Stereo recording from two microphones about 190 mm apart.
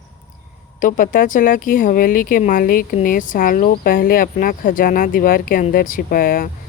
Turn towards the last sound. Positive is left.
turn(degrees=50)  # may be behind; listen again after turning